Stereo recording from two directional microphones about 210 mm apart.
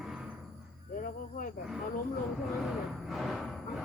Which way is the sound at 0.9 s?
40° left (ahead or behind).